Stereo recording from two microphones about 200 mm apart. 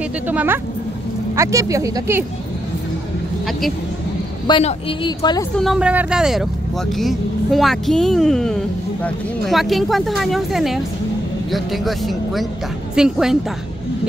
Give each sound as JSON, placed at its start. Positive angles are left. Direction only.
{"t": 0.3, "sound": "speech", "side_deg": -10}
{"t": 4.5, "sound": "a woman's voice", "side_deg": 30}
{"t": 5.6, "sound": "speech", "side_deg": -5}